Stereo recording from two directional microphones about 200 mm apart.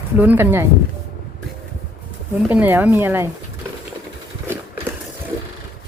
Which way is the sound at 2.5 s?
10° right (ahead or behind).